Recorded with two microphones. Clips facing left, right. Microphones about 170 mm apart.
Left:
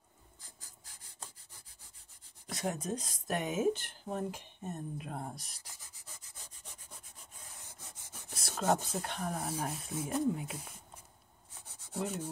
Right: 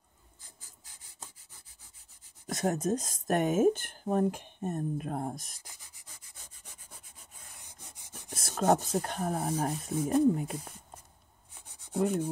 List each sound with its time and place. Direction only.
2.4 s speech: 45° right (ahead or behind)
7.5 s rub: 15° right (ahead or behind)
8.4 s speech: 50° right (ahead or behind)
11.6 s rub: 15° right (ahead or behind)